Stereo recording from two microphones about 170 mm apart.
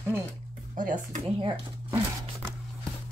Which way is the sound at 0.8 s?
50° right (ahead or behind).